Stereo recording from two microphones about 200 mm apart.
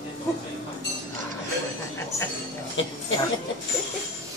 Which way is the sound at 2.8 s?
70° left (ahead or behind).